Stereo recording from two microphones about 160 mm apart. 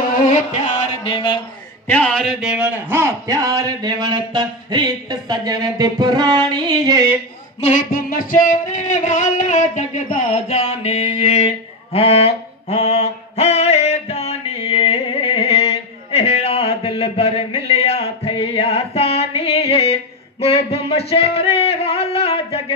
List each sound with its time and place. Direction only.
0.5 s music: 40° left (ahead or behind)
1.9 s speech: 10° left (ahead or behind)
2.5 s speech: 10° right (ahead or behind)
7.6 s music: 55° left (ahead or behind); by 15.6 s 40° left (ahead or behind)
16.1 s a sound: 40° left (ahead or behind)